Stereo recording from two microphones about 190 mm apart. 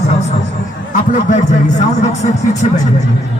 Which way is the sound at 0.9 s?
40° left (ahead or behind).